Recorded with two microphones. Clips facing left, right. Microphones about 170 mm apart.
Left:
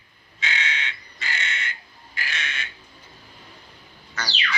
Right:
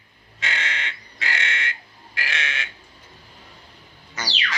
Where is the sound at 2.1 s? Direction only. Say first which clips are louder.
Right 3 dB; 85° right.